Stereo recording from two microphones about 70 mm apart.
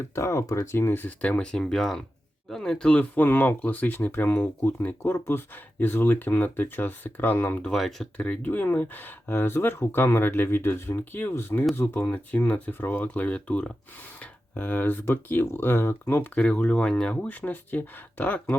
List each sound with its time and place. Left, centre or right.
0.1 s speech: left
0.7 s speech: left
1.2 s speech: centre
3.2 s speech: left
5.1 s speech: left
7.6 s speech: centre
8.2 s speech: left
16.4 s speech: centre
17.2 s speech: left